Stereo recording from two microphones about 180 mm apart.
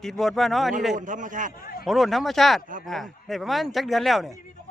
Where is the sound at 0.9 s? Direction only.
45° right (ahead or behind).